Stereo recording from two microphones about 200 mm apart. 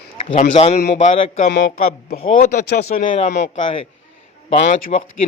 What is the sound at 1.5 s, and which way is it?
Speech, 50° left (ahead or behind).